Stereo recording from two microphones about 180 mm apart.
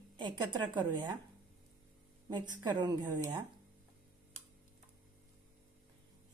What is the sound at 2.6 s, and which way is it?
Speech, 25° right (ahead or behind).